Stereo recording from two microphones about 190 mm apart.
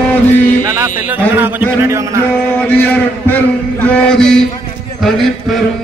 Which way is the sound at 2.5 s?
10° left (ahead or behind).